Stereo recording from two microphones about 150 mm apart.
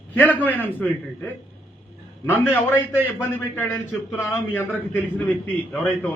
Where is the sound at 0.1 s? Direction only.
10° left (ahead or behind).